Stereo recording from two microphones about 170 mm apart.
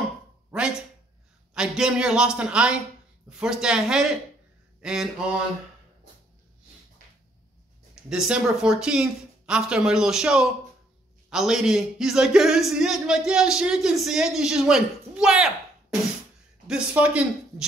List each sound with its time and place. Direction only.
1.5 s a man's voice: 5° right (ahead or behind)
7.9 s a man's voice: 5° right (ahead or behind)